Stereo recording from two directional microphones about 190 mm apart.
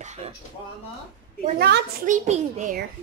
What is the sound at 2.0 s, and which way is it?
Speech, 40° right (ahead or behind).